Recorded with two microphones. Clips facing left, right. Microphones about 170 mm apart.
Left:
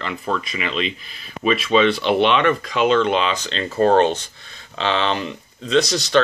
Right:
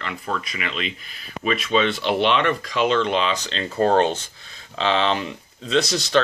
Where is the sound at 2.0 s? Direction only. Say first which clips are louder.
Left 3 dB; 60° left (ahead or behind).